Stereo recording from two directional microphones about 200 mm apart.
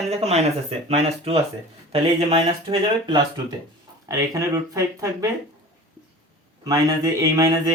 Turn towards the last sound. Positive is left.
turn(degrees=-15)  # may be behind; listen again after turning